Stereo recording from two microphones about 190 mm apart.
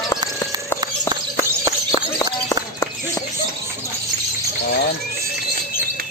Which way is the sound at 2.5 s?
15° left (ahead or behind).